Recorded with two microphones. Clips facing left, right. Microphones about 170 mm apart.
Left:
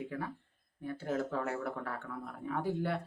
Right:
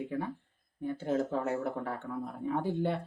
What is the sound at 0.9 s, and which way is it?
Speech, 25° right (ahead or behind).